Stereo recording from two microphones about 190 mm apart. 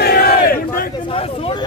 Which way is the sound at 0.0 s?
55° left (ahead or behind).